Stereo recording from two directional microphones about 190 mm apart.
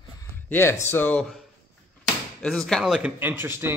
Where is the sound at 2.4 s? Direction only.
5° left (ahead or behind).